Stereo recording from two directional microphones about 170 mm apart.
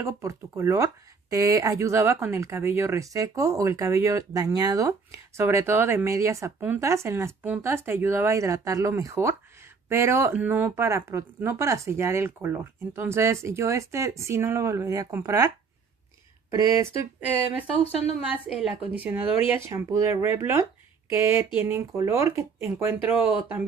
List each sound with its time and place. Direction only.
0.0 s speech: 20° right (ahead or behind)
18.3 s speech: 10° right (ahead or behind)